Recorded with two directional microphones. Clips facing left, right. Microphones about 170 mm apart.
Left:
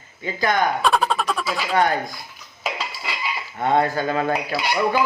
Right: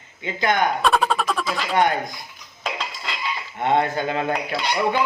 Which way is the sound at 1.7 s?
20° right (ahead or behind).